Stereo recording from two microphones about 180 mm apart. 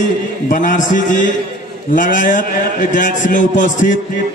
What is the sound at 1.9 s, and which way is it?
Music, 50° left (ahead or behind).